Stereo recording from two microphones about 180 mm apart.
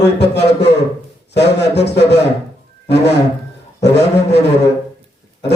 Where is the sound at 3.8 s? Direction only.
70° left (ahead or behind).